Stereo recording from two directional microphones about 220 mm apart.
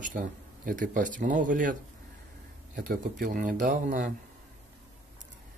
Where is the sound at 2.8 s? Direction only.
40° right (ahead or behind).